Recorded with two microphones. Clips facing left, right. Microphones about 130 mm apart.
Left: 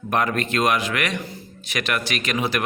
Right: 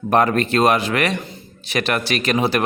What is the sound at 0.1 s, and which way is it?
A man's voice, 35° right (ahead or behind).